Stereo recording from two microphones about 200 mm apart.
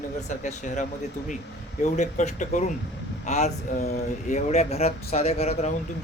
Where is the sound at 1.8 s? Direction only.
35° left (ahead or behind).